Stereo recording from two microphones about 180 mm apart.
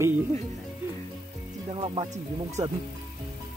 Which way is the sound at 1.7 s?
30° right (ahead or behind).